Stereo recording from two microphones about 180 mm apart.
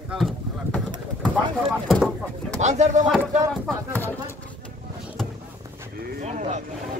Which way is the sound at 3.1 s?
5° left (ahead or behind).